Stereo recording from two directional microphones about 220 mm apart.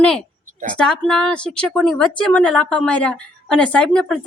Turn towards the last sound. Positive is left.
turn(degrees=5)  # may be behind; listen again after turning